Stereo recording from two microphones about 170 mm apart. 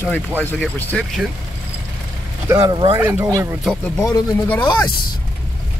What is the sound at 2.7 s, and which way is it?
Speech, 30° right (ahead or behind).